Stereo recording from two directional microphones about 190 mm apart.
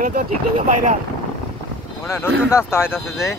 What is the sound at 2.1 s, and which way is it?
Speech, 15° left (ahead or behind).